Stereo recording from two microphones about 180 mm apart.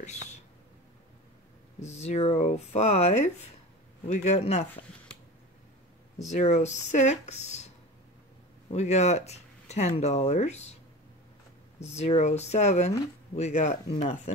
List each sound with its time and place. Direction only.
0.0 s whispering: 40° left (ahead or behind)
1.9 s speech: 35° left (ahead or behind)
6.2 s speech: 40° left (ahead or behind)
8.7 s speech: 40° left (ahead or behind)
11.8 s speech: 35° left (ahead or behind)